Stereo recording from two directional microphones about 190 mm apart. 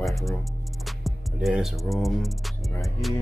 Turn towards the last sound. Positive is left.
turn(degrees=0)  # may be behind; listen again after turning